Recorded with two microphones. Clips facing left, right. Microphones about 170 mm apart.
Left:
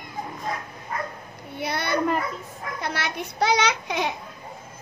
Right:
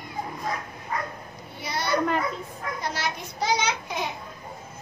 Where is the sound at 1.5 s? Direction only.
60° left (ahead or behind); by 4.0 s 75° left (ahead or behind).